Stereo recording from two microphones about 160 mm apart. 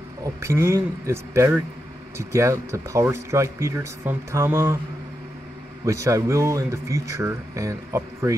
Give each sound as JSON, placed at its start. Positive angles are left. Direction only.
{"t": 0.2, "sound": "speech", "side_deg": -15}
{"t": 5.9, "sound": "speech", "side_deg": -20}